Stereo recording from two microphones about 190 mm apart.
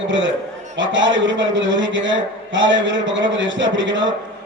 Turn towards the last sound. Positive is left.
turn(degrees=-80)